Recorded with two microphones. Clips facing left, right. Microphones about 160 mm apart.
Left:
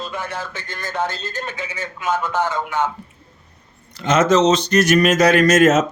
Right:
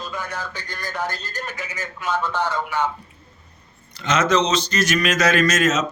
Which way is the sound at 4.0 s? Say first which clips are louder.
Left 5 dB; 50° left (ahead or behind).